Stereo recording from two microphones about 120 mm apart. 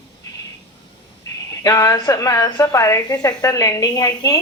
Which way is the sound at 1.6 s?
30° left (ahead or behind).